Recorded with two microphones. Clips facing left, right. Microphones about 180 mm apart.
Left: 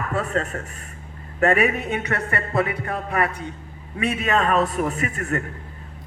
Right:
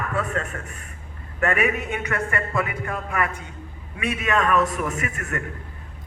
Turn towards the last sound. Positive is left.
turn(degrees=35)  # may be behind; listen again after turning